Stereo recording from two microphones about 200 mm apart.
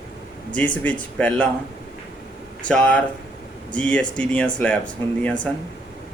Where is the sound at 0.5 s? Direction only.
5° left (ahead or behind).